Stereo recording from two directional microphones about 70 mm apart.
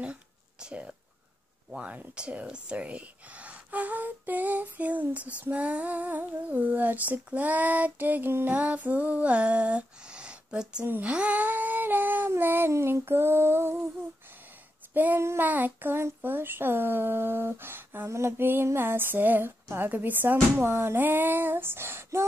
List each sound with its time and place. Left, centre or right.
0.0 s a sound: centre
1.8 s speech: centre
8.5 s a sound: right
10.9 s speech: right
12.7 s female singing: right
13.0 s speech: right
15.1 s speech: right
15.4 s speech: right